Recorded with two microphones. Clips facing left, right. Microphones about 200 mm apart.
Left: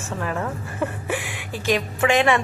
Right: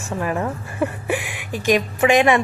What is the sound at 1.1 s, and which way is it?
A woman's voice, 15° right (ahead or behind).